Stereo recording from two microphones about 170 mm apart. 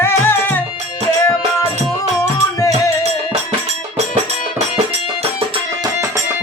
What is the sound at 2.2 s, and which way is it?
Music, 20° left (ahead or behind).